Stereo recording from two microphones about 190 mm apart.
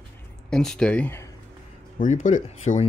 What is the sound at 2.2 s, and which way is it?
Speech, 40° left (ahead or behind).